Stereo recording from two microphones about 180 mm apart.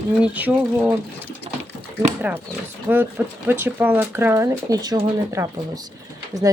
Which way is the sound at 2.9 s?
10° right (ahead or behind).